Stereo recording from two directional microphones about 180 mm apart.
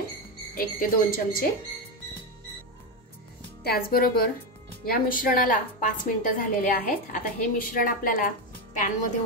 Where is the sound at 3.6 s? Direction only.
55° left (ahead or behind).